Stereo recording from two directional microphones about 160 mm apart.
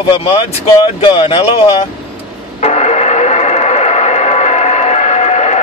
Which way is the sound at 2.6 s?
45° left (ahead or behind).